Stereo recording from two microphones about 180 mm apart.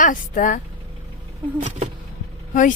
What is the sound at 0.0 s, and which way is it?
Speech, 45° left (ahead or behind).